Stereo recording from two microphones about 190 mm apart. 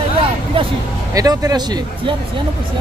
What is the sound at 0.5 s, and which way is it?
Speech, 30° right (ahead or behind).